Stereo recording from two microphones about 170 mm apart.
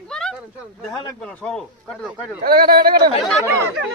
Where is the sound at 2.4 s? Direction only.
60° right (ahead or behind).